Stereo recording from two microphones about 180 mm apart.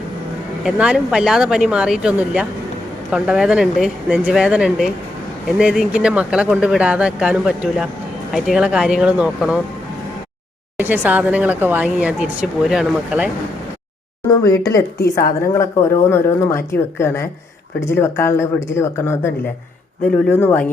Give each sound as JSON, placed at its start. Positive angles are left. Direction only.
{"t": 0.6, "sound": "speech", "side_deg": -5}
{"t": 10.8, "sound": "speech", "side_deg": -10}
{"t": 14.3, "sound": "speech", "side_deg": 20}